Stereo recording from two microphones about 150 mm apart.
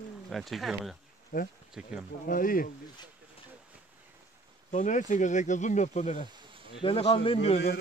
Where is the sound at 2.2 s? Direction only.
70° left (ahead or behind).